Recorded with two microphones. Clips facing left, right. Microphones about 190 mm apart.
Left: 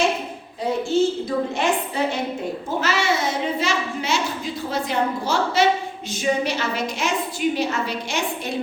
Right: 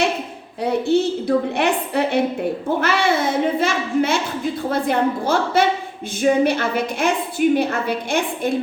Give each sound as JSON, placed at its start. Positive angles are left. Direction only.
{"t": 0.6, "sound": "a child's voice", "side_deg": -65}